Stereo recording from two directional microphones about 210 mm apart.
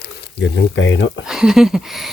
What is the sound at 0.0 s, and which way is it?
Speech, 55° left (ahead or behind).